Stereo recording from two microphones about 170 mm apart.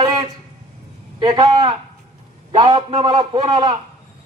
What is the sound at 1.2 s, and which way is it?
Music, 25° right (ahead or behind).